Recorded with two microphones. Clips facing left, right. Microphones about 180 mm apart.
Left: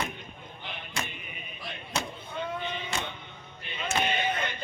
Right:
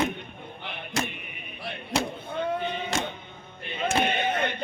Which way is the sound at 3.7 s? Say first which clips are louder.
Right 4 dB; 50° right (ahead or behind).